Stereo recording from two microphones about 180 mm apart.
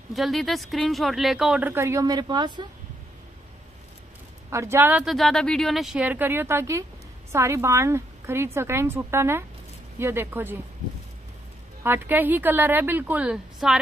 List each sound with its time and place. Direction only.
0.1 s a woman's voice: centre (ahead or behind); by 2.6 s 25° right (ahead or behind)
4.5 s speech: 15° right (ahead or behind)
11.8 s speech: 10° right (ahead or behind)